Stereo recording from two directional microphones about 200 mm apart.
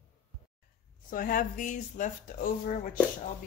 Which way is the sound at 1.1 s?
45° left (ahead or behind).